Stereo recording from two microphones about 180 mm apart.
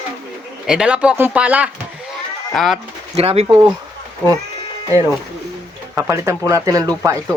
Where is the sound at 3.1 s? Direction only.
35° right (ahead or behind).